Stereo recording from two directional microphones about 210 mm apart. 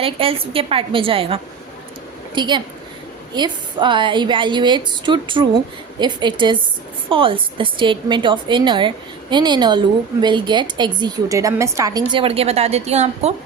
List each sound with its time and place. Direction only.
0.0 s a woman's voice: 25° right (ahead or behind)